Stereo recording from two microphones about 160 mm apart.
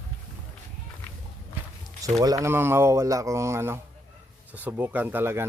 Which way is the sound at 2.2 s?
20° right (ahead or behind).